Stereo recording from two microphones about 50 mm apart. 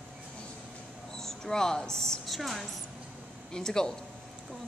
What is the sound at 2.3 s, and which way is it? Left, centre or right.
Speech, centre.